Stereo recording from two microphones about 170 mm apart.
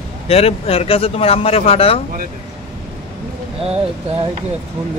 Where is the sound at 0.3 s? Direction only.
35° left (ahead or behind).